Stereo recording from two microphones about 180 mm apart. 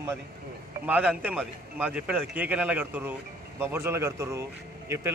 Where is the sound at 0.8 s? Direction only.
10° right (ahead or behind).